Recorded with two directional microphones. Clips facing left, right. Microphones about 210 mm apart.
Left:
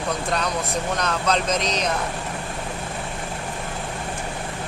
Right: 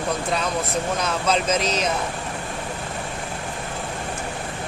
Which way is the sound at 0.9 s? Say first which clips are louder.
Even; 5° right (ahead or behind).